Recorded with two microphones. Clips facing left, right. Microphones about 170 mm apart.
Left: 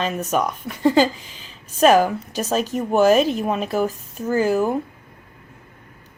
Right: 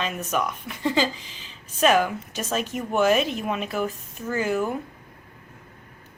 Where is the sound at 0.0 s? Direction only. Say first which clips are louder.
Left 5 dB; 35° left (ahead or behind).